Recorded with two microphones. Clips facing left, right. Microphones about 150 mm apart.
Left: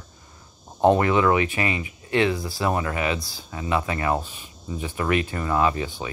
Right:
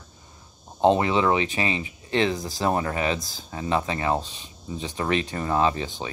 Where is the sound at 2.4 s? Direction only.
40° right (ahead or behind).